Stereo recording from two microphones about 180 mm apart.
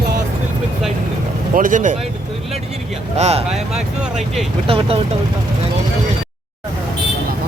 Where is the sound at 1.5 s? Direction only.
50° right (ahead or behind).